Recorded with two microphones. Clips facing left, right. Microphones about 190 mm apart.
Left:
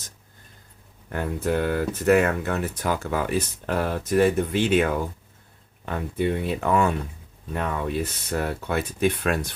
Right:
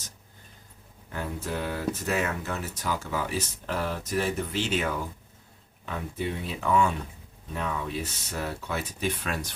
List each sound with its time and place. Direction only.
1.1 s speech: 60° left (ahead or behind)